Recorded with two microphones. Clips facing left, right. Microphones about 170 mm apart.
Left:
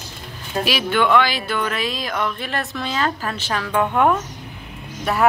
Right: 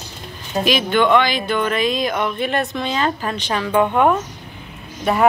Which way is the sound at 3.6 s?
5° right (ahead or behind).